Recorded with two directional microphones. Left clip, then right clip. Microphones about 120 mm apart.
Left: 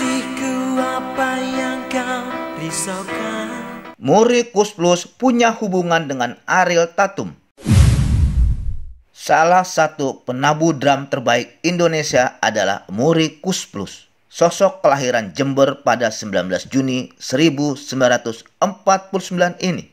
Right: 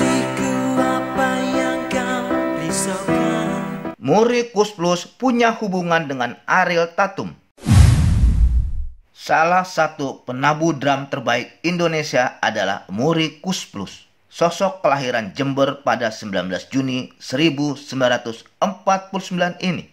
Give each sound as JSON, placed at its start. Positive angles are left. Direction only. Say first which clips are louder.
{"t": 0.0, "sound": "music", "louder": "right 2 dB", "side_deg": 0}
{"t": 4.0, "sound": "speech", "louder": "left 3 dB", "side_deg": 30}
{"t": 9.2, "sound": "a man's voice", "louder": "left 3 dB", "side_deg": 40}